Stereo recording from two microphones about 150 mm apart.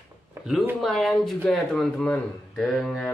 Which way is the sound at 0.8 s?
Centre (ahead or behind).